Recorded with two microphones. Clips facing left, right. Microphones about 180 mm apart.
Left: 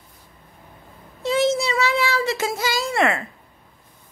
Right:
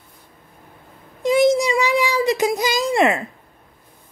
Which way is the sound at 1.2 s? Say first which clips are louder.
Right 5 dB; 15° right (ahead or behind).